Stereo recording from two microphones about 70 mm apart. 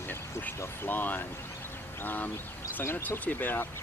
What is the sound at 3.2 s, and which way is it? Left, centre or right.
Speech, left.